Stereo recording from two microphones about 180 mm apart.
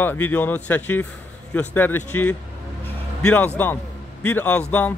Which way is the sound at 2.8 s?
10° left (ahead or behind).